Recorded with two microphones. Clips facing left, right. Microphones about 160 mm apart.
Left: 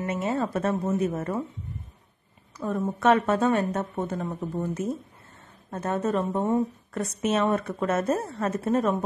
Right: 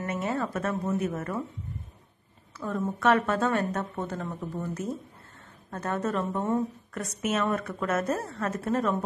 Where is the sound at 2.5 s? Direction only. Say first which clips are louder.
Left 3 dB; 15° left (ahead or behind).